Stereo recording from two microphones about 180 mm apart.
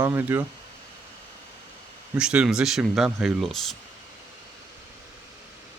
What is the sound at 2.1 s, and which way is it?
Speech, 5° right (ahead or behind).